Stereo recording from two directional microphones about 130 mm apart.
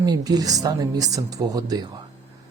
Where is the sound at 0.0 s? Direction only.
30° right (ahead or behind).